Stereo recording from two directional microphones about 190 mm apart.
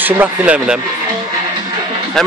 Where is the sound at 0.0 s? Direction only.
10° right (ahead or behind).